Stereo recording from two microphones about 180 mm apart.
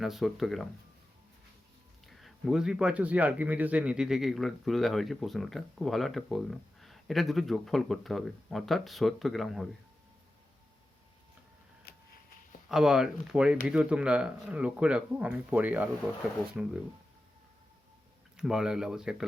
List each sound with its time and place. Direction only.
0.0 s a man's voice: centre (ahead or behind)
2.0 s a man's voice: centre (ahead or behind)
11.9 s a sound: 60° left (ahead or behind)
12.6 s a man's voice: 5° right (ahead or behind)
18.3 s a man's voice: 5° right (ahead or behind)